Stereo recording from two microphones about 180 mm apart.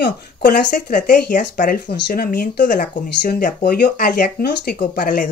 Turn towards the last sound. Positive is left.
turn(degrees=50)  # may be behind; listen again after turning